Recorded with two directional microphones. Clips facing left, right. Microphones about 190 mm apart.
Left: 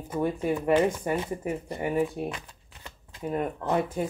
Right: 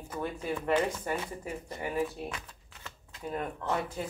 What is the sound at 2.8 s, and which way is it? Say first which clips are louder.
Shuffling cards: left 5 dB; 10° left (ahead or behind).